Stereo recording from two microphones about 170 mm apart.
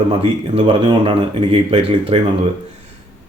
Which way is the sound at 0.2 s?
35° right (ahead or behind).